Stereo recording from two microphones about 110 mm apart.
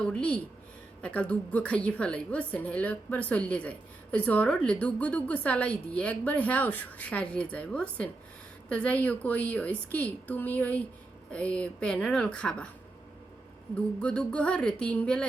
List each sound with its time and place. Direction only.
0.0 s a woman's voice: 10° left (ahead or behind)
13.7 s a woman's voice: 10° left (ahead or behind)